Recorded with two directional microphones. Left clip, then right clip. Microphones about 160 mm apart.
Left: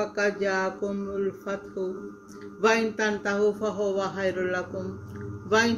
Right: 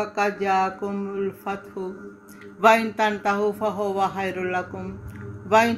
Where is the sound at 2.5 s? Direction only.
30° right (ahead or behind).